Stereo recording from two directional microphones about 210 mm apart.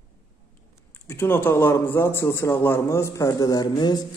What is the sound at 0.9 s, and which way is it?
A man's voice, 10° left (ahead or behind).